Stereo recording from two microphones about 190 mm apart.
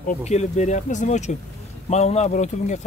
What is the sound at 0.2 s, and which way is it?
Speech, 35° left (ahead or behind).